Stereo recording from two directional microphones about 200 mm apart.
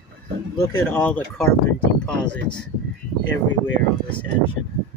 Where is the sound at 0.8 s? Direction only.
10° left (ahead or behind).